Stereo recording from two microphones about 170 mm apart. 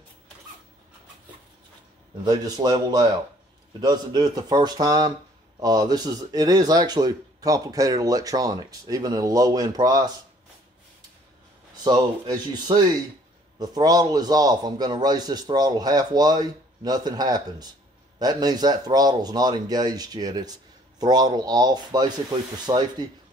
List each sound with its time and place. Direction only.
2.2 s speech: 25° right (ahead or behind)
11.7 s speech: 25° right (ahead or behind)